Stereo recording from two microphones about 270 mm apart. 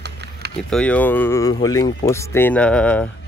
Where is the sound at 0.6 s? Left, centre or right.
Centre.